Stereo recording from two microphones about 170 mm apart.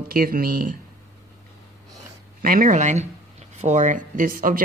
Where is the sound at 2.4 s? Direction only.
55° right (ahead or behind).